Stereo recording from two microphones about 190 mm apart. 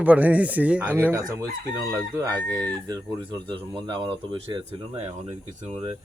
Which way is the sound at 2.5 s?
20° right (ahead or behind).